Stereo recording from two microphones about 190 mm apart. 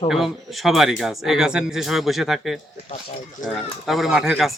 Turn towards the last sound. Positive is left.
turn(degrees=0)  # may be behind; listen again after turning